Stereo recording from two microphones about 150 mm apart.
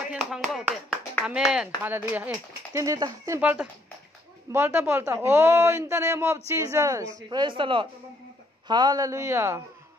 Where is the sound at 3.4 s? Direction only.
10° right (ahead or behind).